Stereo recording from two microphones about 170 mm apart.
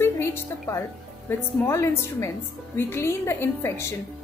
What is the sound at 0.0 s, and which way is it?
A woman's voice, 15° left (ahead or behind).